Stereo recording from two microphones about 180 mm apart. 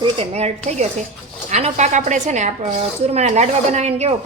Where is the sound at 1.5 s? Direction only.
40° right (ahead or behind).